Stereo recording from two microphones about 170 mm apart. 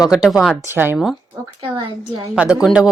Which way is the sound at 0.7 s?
15° right (ahead or behind).